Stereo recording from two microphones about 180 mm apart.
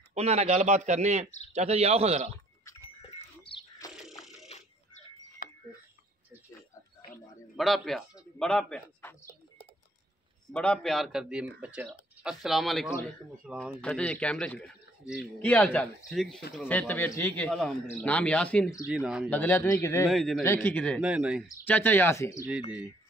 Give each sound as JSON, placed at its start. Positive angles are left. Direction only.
{"t": 0.1, "sound": "speech", "side_deg": -35}
{"t": 2.3, "sound": "sheep", "side_deg": 15}
{"t": 3.2, "sound": "bird", "side_deg": 30}
{"t": 3.9, "sound": "a sound", "side_deg": 0}
{"t": 4.5, "sound": "a sound", "side_deg": 40}
{"t": 5.4, "sound": "a sound", "side_deg": 55}
{"t": 7.5, "sound": "a man's voice", "side_deg": 0}
{"t": 10.5, "sound": "a man's voice", "side_deg": 5}
{"t": 18.9, "sound": "a man's voice", "side_deg": -5}
{"t": 19.3, "sound": "a man's voice", "side_deg": 15}
{"t": 20.1, "sound": "a man's voice", "side_deg": 0}
{"t": 20.4, "sound": "a man's voice", "side_deg": 10}
{"t": 21.0, "sound": "a man's voice", "side_deg": -5}
{"t": 21.6, "sound": "a man's voice", "side_deg": 10}